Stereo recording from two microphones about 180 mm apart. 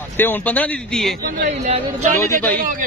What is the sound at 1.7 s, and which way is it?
Speech, 40° right (ahead or behind).